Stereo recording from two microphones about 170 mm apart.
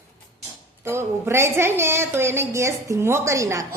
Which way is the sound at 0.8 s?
15° right (ahead or behind).